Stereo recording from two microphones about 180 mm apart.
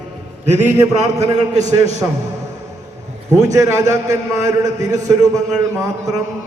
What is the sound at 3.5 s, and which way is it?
A man's voice, 15° right (ahead or behind).